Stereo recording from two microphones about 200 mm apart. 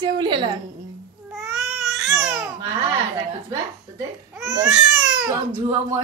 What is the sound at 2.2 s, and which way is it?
Babbling, 5° right (ahead or behind).